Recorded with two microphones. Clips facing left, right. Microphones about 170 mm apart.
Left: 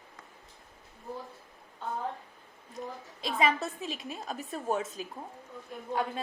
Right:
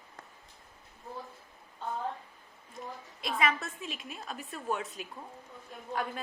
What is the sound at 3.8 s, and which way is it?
Speech, 35° left (ahead or behind).